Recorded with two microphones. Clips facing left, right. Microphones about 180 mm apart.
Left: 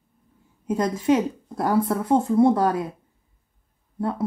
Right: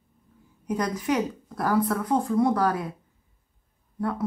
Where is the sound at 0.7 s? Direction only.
25° left (ahead or behind).